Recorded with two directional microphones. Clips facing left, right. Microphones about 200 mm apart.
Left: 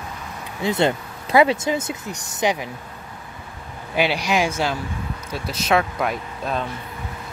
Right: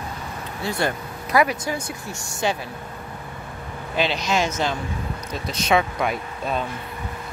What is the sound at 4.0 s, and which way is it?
A man's voice, 10° left (ahead or behind).